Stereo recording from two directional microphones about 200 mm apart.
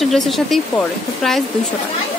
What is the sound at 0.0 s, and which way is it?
A woman's voice, centre (ahead or behind).